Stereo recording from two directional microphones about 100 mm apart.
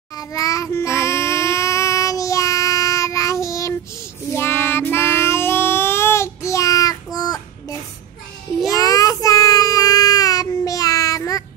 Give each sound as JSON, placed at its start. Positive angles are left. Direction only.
{"t": 0.1, "sound": "a sound", "side_deg": 35}
{"t": 4.3, "sound": "child singing", "side_deg": 20}
{"t": 8.7, "sound": "child singing", "side_deg": 35}